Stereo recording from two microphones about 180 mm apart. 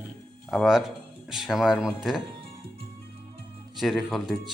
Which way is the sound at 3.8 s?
Centre (ahead or behind).